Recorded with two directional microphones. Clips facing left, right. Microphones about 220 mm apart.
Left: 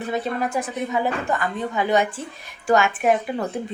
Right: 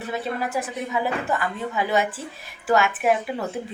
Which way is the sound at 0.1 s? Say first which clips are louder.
Left 2 dB; centre (ahead or behind).